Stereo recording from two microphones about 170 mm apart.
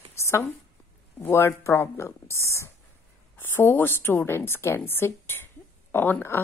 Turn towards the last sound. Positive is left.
turn(degrees=15)  # may be behind; listen again after turning